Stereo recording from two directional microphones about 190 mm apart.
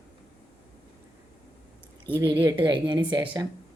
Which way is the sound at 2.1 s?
20° right (ahead or behind).